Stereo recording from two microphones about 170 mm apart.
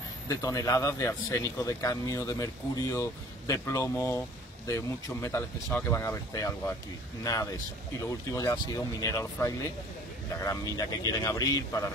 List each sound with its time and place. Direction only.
0.3 s speech: 20° left (ahead or behind)
8.0 s speech: 20° left (ahead or behind)